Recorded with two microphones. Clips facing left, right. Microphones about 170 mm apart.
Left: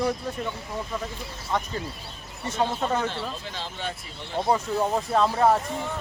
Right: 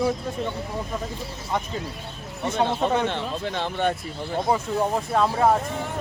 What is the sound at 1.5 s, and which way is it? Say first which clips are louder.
Speech: even; 10° right (ahead or behind).